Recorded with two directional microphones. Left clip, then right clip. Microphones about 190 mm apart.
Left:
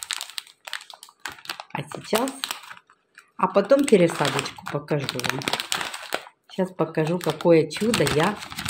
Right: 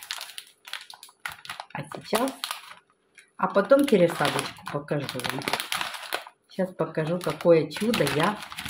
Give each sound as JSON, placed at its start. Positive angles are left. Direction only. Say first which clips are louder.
{"t": 0.1, "sound": "crumpling", "louder": "left 4 dB", "side_deg": 30}
{"t": 1.5, "sound": "typing", "louder": "left 4 dB", "side_deg": 30}
{"t": 3.3, "sound": "speech", "louder": "left 1 dB", "side_deg": 30}